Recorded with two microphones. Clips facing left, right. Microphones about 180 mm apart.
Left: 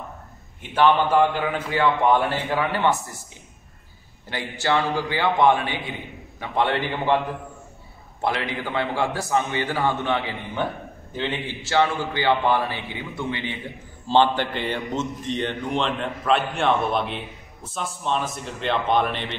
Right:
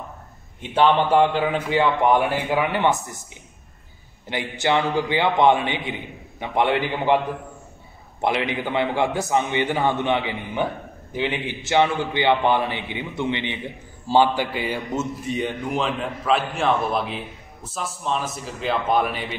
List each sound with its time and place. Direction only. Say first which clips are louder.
0.6 s a man's voice: right 1 dB; 20° right (ahead or behind)
4.3 s a man's voice: right 2 dB; 20° right (ahead or behind)
8.2 s a man's voice: right 3 dB; 20° right (ahead or behind)
14.0 s a man's voice: right 1 dB; 10° right (ahead or behind)